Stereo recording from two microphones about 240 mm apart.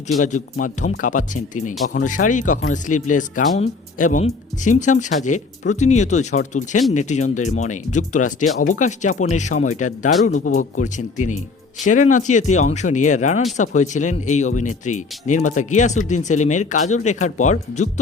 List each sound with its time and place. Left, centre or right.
0.2 s speech: left